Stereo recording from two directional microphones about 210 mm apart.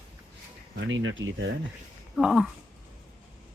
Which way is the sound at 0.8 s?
65° right (ahead or behind).